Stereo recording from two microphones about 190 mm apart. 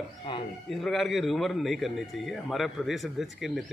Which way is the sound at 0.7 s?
Centre (ahead or behind).